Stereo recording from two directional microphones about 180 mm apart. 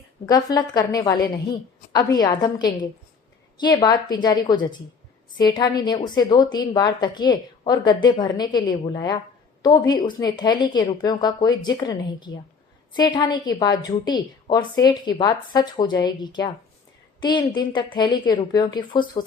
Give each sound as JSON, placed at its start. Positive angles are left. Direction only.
{"t": 0.3, "sound": "a woman's voice", "side_deg": 20}